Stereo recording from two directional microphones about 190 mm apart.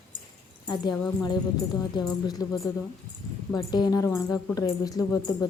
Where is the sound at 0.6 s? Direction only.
20° left (ahead or behind).